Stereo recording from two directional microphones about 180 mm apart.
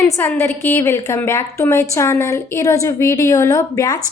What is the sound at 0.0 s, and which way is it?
A woman's voice, 10° left (ahead or behind).